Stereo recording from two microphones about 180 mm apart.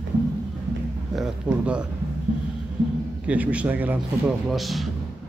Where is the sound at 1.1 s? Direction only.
5° right (ahead or behind).